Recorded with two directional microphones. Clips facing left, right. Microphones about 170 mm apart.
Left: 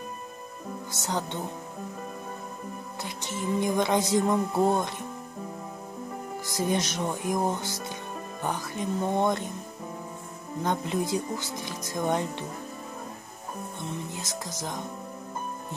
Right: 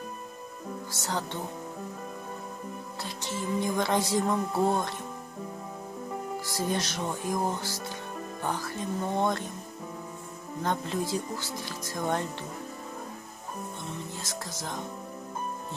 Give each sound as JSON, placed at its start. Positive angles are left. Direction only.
{"t": 0.9, "sound": "speech", "side_deg": 20}
{"t": 3.0, "sound": "speech", "side_deg": 20}
{"t": 6.4, "sound": "speech", "side_deg": 15}
{"t": 10.6, "sound": "speech", "side_deg": 15}
{"t": 14.1, "sound": "speech", "side_deg": 15}